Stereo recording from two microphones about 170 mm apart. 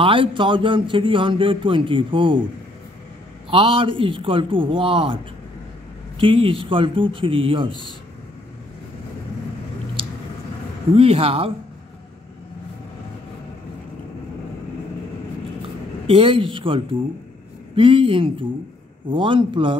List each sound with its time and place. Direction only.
0.0 s a man's voice: 30° right (ahead or behind)
3.4 s a man's voice: 30° right (ahead or behind)
11.0 s a man's voice: 35° right (ahead or behind)
16.1 s a man's voice: 30° right (ahead or behind)